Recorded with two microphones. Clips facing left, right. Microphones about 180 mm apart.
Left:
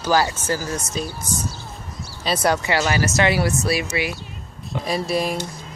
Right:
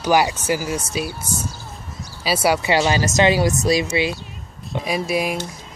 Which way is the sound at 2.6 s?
20° right (ahead or behind).